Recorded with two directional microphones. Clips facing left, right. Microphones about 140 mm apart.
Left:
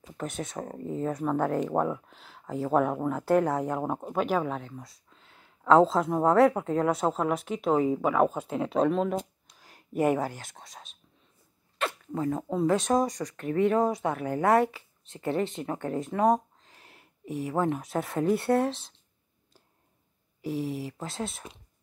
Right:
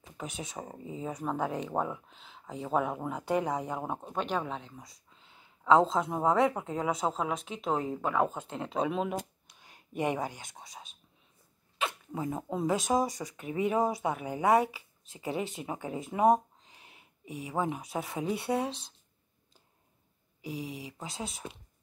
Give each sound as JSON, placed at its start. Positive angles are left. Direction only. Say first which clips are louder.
{"t": 0.2, "sound": "speech", "louder": "left 5 dB", "side_deg": 0}
{"t": 9.7, "sound": "a sound", "louder": "left 6 dB", "side_deg": 40}
{"t": 10.3, "sound": "speech", "louder": "left 2 dB", "side_deg": 0}
{"t": 11.8, "sound": "speech", "louder": "left 4 dB", "side_deg": -10}
{"t": 20.4, "sound": "speech", "louder": "left 7 dB", "side_deg": 0}